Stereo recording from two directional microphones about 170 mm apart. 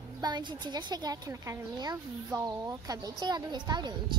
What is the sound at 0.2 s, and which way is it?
Speech, 25° right (ahead or behind).